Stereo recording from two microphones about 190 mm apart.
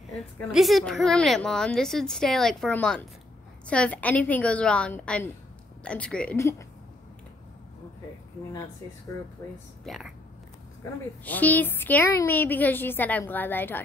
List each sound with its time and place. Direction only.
0.5 s a woman's voice: centre (ahead or behind)
9.8 s a woman's voice: centre (ahead or behind)